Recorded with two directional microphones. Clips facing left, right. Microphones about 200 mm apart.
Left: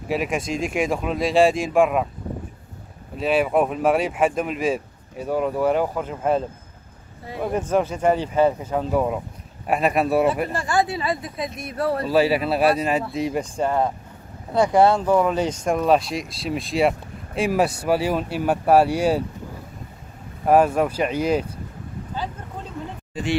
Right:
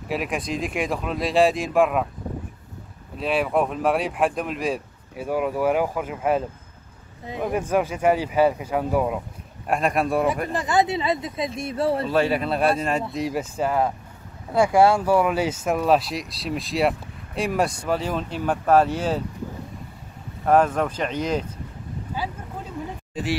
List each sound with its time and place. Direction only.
0.1 s speech: centre (ahead or behind)
3.2 s speech: centre (ahead or behind)
10.5 s speech: 20° right (ahead or behind)
12.1 s speech: 5° left (ahead or behind)
20.4 s speech: 10° left (ahead or behind)
22.2 s speech: 10° right (ahead or behind)